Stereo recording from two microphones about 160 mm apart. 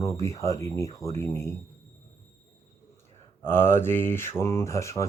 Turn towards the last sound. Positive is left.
turn(degrees=20)  # may be behind; listen again after turning